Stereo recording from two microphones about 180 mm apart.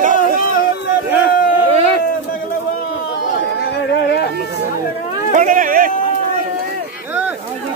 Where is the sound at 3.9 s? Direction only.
65° left (ahead or behind).